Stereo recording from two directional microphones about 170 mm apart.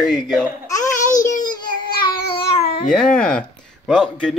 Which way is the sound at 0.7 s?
20° left (ahead or behind).